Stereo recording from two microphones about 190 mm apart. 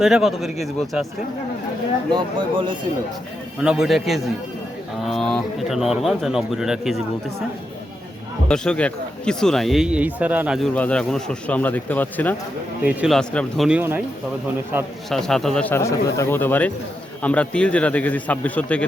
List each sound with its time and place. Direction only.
0.0 s speech: centre (ahead or behind)
2.0 s speech: 25° right (ahead or behind)
3.6 s speech: centre (ahead or behind)
8.4 s speech: 5° left (ahead or behind)
10.8 s speech: 5° left (ahead or behind)
12.8 s a man's voice: 5° right (ahead or behind)
15.1 s speech: centre (ahead or behind)